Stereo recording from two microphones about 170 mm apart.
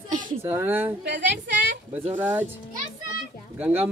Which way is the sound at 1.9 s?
10° right (ahead or behind).